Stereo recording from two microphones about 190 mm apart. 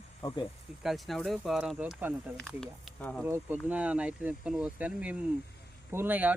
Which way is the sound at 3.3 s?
10° right (ahead or behind).